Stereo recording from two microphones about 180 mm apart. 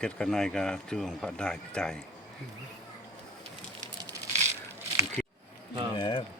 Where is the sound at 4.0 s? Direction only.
20° right (ahead or behind).